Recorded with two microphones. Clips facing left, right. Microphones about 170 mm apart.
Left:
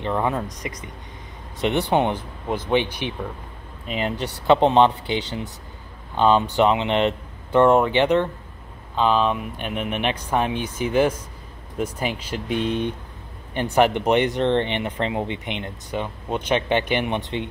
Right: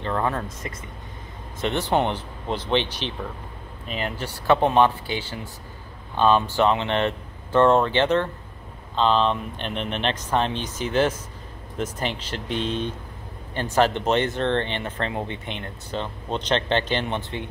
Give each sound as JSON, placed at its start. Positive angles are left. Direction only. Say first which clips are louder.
{"t": 0.0, "sound": "speech", "louder": "left 2 dB", "side_deg": 15}